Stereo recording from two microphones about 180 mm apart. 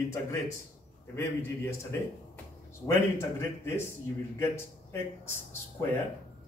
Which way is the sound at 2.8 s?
15° left (ahead or behind).